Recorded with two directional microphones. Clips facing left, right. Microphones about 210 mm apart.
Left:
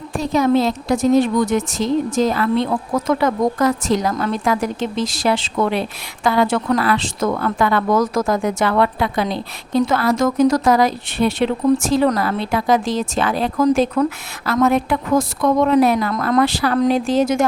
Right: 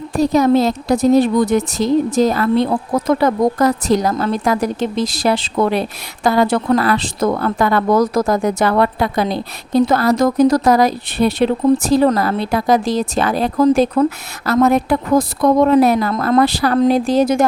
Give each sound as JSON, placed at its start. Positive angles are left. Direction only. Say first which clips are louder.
{"t": 0.2, "sound": "speech", "louder": "right 3 dB", "side_deg": -40}